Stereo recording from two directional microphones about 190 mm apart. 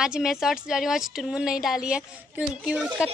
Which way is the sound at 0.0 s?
5° right (ahead or behind).